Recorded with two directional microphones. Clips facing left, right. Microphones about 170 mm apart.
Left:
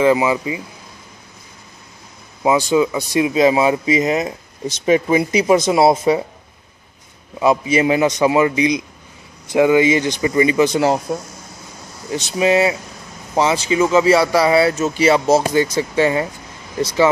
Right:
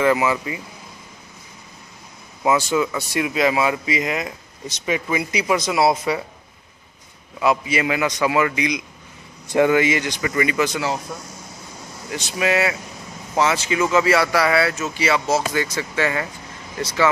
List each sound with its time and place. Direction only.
0.0 s speech: 20° left (ahead or behind)
2.4 s speech: 15° left (ahead or behind)
7.3 s speech: 25° left (ahead or behind)
9.5 s speech: 10° left (ahead or behind)
10.7 s speech: 40° left (ahead or behind)
12.4 s speech: 25° left (ahead or behind)
14.8 s speech: 35° left (ahead or behind)
15.5 s speech: 20° left (ahead or behind)